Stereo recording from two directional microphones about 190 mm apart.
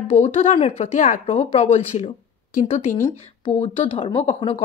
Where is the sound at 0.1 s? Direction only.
30° left (ahead or behind).